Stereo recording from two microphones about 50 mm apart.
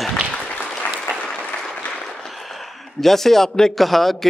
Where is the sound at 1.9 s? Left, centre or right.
Centre.